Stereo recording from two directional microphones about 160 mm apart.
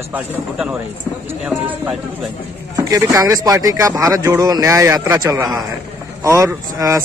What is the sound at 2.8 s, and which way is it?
Speech, 20° right (ahead or behind).